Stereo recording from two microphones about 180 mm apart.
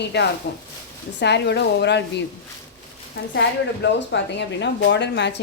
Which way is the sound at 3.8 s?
75° left (ahead or behind).